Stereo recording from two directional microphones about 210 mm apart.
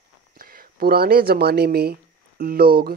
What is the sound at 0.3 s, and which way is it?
Speech, 45° right (ahead or behind).